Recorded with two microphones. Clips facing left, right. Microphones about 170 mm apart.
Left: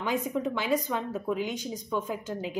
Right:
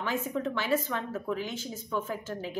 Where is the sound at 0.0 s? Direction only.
15° left (ahead or behind).